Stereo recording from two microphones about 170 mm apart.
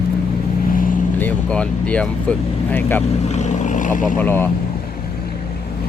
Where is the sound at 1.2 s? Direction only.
10° left (ahead or behind).